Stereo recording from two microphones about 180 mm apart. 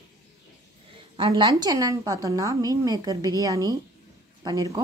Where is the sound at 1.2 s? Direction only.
25° right (ahead or behind).